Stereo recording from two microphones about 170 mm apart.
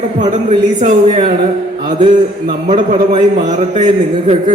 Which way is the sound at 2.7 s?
45° right (ahead or behind).